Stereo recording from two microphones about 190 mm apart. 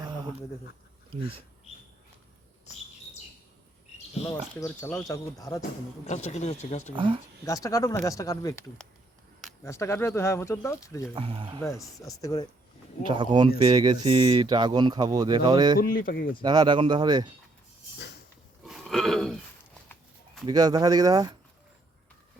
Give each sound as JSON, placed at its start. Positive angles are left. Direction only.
{"t": 4.6, "sound": "speech", "side_deg": 15}
{"t": 6.1, "sound": "speech", "side_deg": 35}
{"t": 6.9, "sound": "speech", "side_deg": -25}
{"t": 7.4, "sound": "speech", "side_deg": 15}
{"t": 11.1, "sound": "speech", "side_deg": -25}
{"t": 11.9, "sound": "speech", "side_deg": 20}
{"t": 13.1, "sound": "speech", "side_deg": -25}
{"t": 15.8, "sound": "speech", "side_deg": 45}
{"t": 16.4, "sound": "speech", "side_deg": -20}
{"t": 18.6, "sound": "a sound", "side_deg": 0}
{"t": 20.5, "sound": "speech", "side_deg": -20}